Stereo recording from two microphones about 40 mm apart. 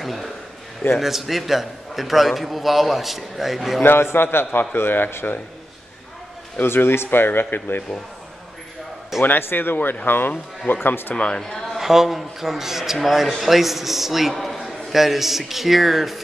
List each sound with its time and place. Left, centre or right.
0.0 s a man's voice: centre
3.8 s speech: left
4.7 s speech: left
6.6 s speech: left
9.2 s speech: left
11.3 s speech: centre
11.7 s a man's voice: centre
14.3 s a sound: centre
14.6 s speech: centre